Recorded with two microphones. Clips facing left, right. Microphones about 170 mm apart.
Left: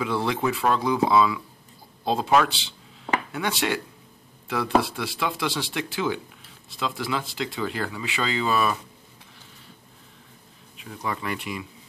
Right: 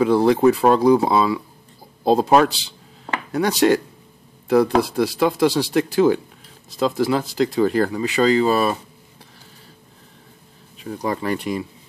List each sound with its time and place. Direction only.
0.0 s speech: 40° right (ahead or behind)
10.8 s speech: 35° right (ahead or behind)